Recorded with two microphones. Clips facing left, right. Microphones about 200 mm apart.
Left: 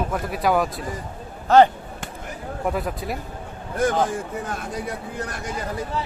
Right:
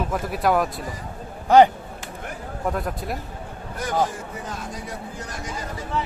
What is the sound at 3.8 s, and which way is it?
Speech, 55° left (ahead or behind).